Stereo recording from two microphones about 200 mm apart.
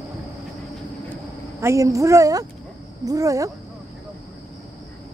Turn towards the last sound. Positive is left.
turn(degrees=-15)  # may be behind; listen again after turning